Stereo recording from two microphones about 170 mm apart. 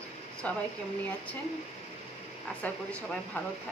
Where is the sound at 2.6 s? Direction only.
10° left (ahead or behind).